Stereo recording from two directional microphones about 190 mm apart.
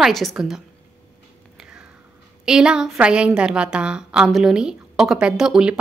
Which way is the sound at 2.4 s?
5° right (ahead or behind).